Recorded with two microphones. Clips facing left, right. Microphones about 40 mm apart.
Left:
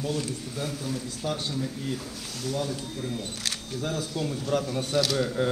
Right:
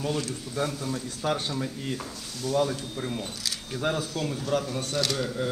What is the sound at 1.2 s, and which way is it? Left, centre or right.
Speech, right.